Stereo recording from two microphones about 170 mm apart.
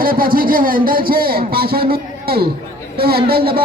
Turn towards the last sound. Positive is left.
turn(degrees=-65)  # may be behind; listen again after turning